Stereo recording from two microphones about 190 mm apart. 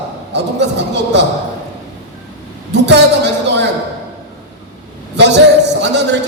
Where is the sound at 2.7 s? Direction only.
65° right (ahead or behind).